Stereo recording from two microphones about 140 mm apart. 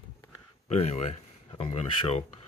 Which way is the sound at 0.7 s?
50° left (ahead or behind).